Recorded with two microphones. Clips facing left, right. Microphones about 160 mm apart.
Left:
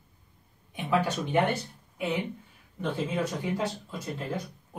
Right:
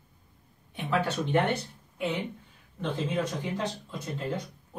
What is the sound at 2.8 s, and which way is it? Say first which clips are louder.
Speech: even; 10° left (ahead or behind).